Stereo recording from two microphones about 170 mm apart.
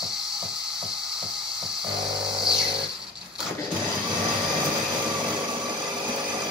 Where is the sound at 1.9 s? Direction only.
5° right (ahead or behind).